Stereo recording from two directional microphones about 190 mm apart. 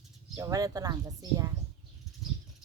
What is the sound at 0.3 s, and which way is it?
Speech, 20° right (ahead or behind).